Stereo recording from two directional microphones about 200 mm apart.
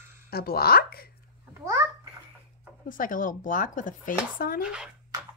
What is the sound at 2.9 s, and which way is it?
Speech, 40° left (ahead or behind).